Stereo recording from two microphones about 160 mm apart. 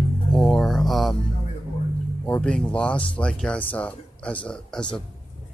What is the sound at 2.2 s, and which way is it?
A man's voice, 10° left (ahead or behind).